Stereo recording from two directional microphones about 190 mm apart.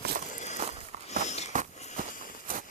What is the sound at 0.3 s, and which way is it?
Walk, 40° left (ahead or behind).